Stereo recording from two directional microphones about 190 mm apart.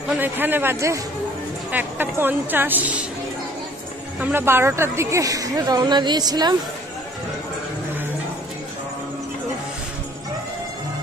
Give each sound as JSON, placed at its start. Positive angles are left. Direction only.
{"t": 0.2, "sound": "a woman's voice", "side_deg": -10}
{"t": 4.2, "sound": "a woman's voice", "side_deg": -10}